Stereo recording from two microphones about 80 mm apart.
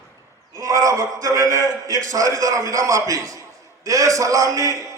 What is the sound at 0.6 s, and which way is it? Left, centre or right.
A man's voice, right.